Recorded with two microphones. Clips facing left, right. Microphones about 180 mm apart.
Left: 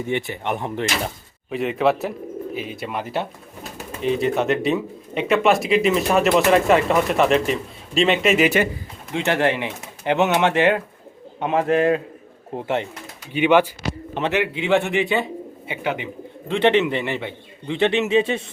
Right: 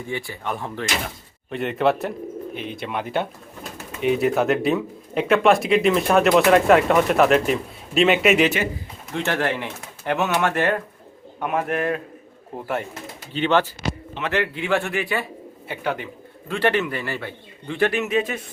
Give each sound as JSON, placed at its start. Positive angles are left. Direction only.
{"t": 0.1, "sound": "a man's voice", "side_deg": 20}
{"t": 1.5, "sound": "speech", "side_deg": 0}
{"t": 9.1, "sound": "a man's voice", "side_deg": 15}